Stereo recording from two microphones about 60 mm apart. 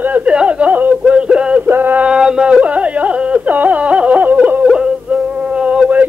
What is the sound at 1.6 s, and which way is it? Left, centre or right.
Male singing, right.